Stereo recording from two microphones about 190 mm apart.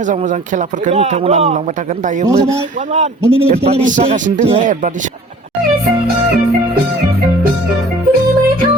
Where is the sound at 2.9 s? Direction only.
35° right (ahead or behind).